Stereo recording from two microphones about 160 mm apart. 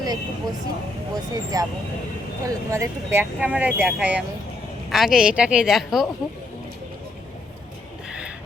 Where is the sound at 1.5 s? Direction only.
25° right (ahead or behind); by 6.1 s 5° right (ahead or behind).